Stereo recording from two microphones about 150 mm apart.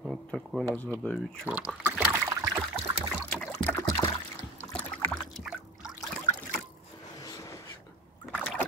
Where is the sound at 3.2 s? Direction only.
10° left (ahead or behind).